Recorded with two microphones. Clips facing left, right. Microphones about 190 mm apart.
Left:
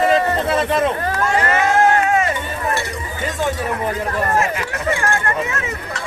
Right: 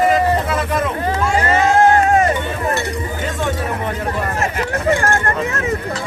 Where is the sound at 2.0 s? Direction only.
35° right (ahead or behind).